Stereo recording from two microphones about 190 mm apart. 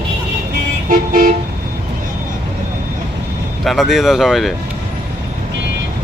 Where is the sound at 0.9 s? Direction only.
45° right (ahead or behind).